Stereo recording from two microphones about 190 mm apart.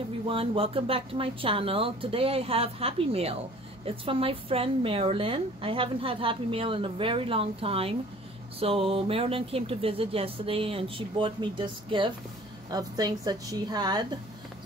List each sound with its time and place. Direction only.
0.3 s a woman's voice: 30° right (ahead or behind)